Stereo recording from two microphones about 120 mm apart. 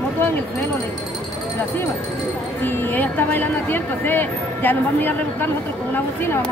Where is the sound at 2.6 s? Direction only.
15° left (ahead or behind).